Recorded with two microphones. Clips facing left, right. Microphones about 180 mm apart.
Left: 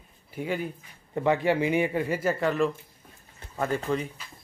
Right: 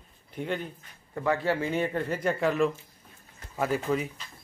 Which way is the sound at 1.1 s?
20° left (ahead or behind).